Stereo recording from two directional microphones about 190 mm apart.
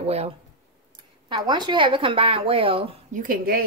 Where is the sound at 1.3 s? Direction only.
25° right (ahead or behind).